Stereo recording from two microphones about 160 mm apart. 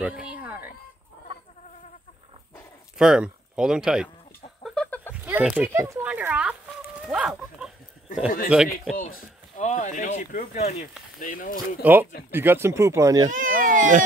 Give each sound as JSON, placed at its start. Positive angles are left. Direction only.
{"t": 0.0, "sound": "a sound", "side_deg": -5}
{"t": 3.0, "sound": "speech", "side_deg": -5}
{"t": 4.6, "sound": "a sound", "side_deg": 5}
{"t": 5.1, "sound": "a sound", "side_deg": -10}
{"t": 5.7, "sound": "speech", "side_deg": -15}
{"t": 7.0, "sound": "chicken", "side_deg": -5}
{"t": 8.5, "sound": "a man's voice", "side_deg": -5}
{"t": 8.9, "sound": "speech", "side_deg": 55}
{"t": 11.1, "sound": "speech", "side_deg": 60}
{"t": 11.8, "sound": "speech", "side_deg": -10}
{"t": 13.3, "sound": "speech", "side_deg": -55}